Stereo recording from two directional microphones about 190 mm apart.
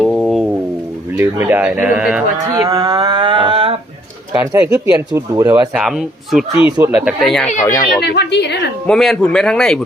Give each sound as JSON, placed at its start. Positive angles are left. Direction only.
{"t": 0.0, "sound": "music", "side_deg": 5}
{"t": 1.1, "sound": "speech", "side_deg": -10}
{"t": 2.6, "sound": "a sound", "side_deg": -15}
{"t": 4.3, "sound": "speech", "side_deg": -10}
{"t": 5.7, "sound": "a man's voice", "side_deg": 0}
{"t": 7.6, "sound": "speech", "side_deg": 20}
{"t": 8.0, "sound": "a woman's voice", "side_deg": 60}
{"t": 8.9, "sound": "a man's voice", "side_deg": 5}